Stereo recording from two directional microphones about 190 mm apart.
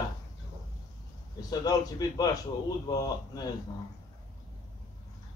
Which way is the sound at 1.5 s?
20° left (ahead or behind).